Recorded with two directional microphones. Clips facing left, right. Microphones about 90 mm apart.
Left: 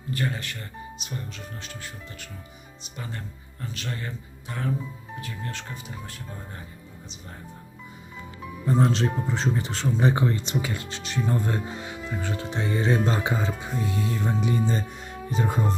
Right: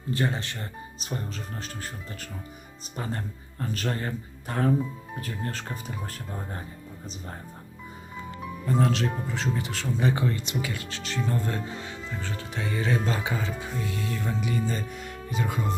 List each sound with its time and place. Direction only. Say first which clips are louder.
0.1 s speech: right 2 dB; 25° right (ahead or behind)
8.6 s speech: left 2 dB; 25° left (ahead or behind)